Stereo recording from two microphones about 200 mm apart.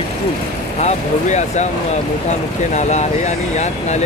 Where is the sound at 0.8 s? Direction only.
35° left (ahead or behind).